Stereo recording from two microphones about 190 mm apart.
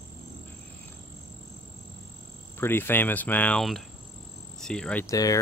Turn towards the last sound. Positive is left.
turn(degrees=20)  # may be behind; listen again after turning